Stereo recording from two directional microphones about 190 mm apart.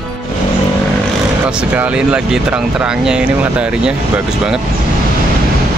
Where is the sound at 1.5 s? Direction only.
5° right (ahead or behind).